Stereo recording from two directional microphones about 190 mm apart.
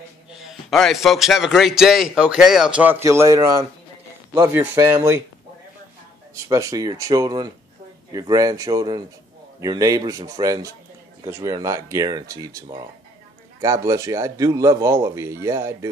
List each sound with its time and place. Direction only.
0.4 s a man's voice: centre (ahead or behind)
6.3 s speech: 15° right (ahead or behind)